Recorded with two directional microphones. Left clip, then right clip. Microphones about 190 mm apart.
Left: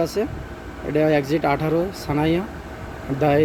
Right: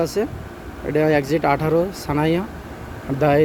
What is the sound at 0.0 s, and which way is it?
Speech, 10° right (ahead or behind).